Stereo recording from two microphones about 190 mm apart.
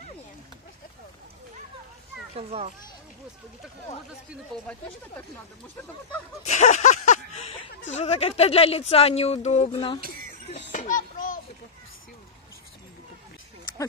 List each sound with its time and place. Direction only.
2.3 s a child's voice: 30° right (ahead or behind)
6.4 s a sound: 35° left (ahead or behind)
7.9 s speech: 35° left (ahead or behind)
10.7 s music: 45° left (ahead or behind)